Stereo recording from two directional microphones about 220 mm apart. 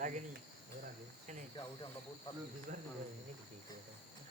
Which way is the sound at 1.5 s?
20° left (ahead or behind).